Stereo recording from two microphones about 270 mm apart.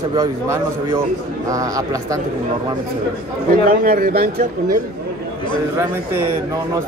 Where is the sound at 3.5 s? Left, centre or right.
Right.